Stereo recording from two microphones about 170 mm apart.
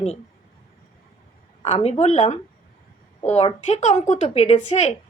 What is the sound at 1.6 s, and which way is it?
Speech, 40° left (ahead or behind).